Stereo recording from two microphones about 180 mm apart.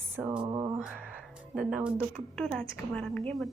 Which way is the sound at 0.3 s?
25° right (ahead or behind).